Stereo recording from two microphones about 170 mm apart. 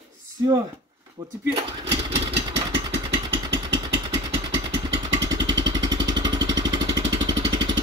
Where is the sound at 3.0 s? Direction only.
25° right (ahead or behind).